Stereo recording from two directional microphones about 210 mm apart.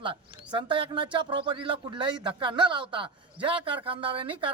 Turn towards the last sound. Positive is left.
turn(degrees=-25)  # may be behind; listen again after turning